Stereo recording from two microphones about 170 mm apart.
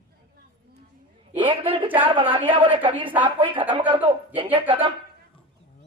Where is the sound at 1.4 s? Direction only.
30° right (ahead or behind).